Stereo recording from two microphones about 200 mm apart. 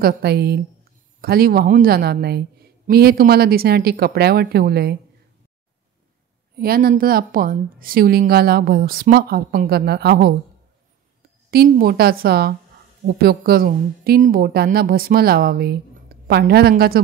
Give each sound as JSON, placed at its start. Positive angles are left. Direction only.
{"t": 0.0, "sound": "a woman's voice", "side_deg": -55}
{"t": 6.5, "sound": "a woman's voice", "side_deg": -50}
{"t": 11.5, "sound": "a woman's voice", "side_deg": -50}